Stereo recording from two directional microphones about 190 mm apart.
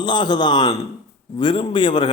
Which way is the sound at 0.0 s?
25° left (ahead or behind).